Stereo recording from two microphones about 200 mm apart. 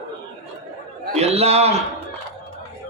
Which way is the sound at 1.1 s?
30° right (ahead or behind).